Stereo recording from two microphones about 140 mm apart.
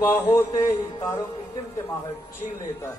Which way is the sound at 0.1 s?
20° left (ahead or behind).